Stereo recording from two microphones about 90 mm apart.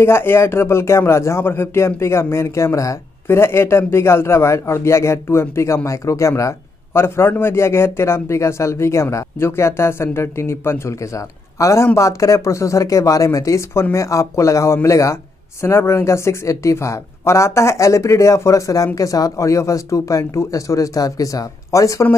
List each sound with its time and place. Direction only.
0.0 s a man's voice: 25° left (ahead or behind)